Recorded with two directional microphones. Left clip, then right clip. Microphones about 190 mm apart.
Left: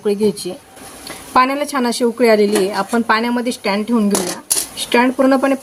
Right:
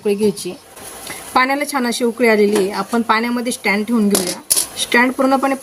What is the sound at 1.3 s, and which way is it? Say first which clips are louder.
Speech: left 1 dB; 15° right (ahead or behind).